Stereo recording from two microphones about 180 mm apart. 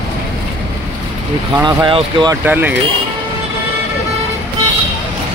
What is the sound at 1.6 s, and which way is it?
Speech, 25° right (ahead or behind).